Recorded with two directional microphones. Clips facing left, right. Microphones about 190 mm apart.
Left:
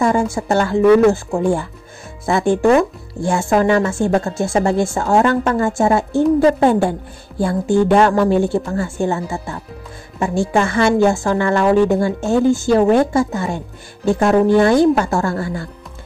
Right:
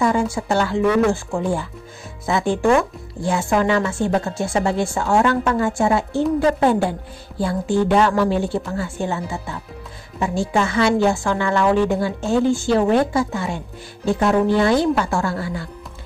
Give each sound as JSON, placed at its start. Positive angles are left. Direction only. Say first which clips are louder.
{"t": 0.0, "sound": "speech", "louder": "left 3 dB", "side_deg": 45}